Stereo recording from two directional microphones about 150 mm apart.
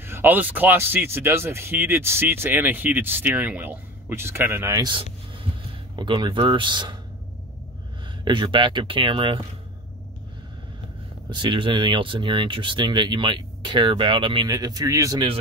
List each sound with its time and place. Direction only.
0.0 s speech: 15° right (ahead or behind)
5.9 s speech: 30° right (ahead or behind)
8.2 s speech: 30° right (ahead or behind)
11.2 s speech: 30° right (ahead or behind)